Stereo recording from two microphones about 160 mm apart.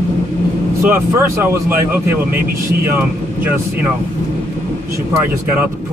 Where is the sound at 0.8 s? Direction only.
15° right (ahead or behind).